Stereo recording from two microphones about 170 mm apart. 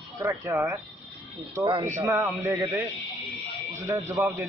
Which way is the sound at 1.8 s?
20° right (ahead or behind).